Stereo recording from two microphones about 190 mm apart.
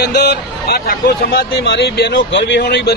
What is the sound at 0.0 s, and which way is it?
Speech, 60° left (ahead or behind).